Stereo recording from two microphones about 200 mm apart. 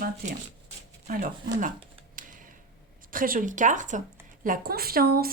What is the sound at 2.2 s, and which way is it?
Computer keyboard, 40° right (ahead or behind).